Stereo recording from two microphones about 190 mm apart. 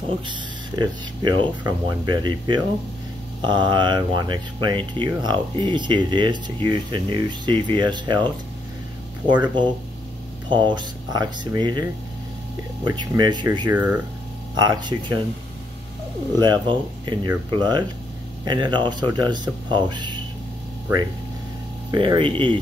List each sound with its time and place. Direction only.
0.3 s speech: 25° right (ahead or behind)
9.3 s speech: 25° right (ahead or behind)
12.8 s speech: 25° right (ahead or behind)
13.7 s speech: 10° right (ahead or behind)
14.5 s speech: 20° right (ahead or behind)
16.3 s speech: 25° right (ahead or behind)
21.9 s speech: 25° right (ahead or behind)